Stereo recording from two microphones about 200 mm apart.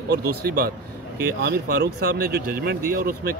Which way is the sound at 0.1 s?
50° right (ahead or behind).